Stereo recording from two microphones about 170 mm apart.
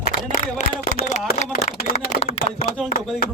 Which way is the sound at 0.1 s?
60° left (ahead or behind).